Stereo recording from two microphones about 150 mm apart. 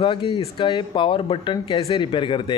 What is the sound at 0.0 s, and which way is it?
A man's voice, 35° left (ahead or behind).